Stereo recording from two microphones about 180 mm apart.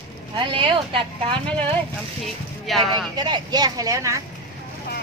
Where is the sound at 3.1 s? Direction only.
25° right (ahead or behind).